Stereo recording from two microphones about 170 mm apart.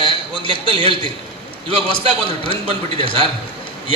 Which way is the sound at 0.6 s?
30° right (ahead or behind).